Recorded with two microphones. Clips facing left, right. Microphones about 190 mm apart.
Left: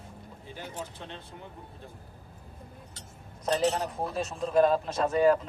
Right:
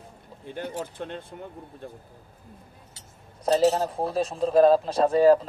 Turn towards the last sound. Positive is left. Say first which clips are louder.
# right 5 dB
turn(degrees=-35)  # may be behind; listen again after turning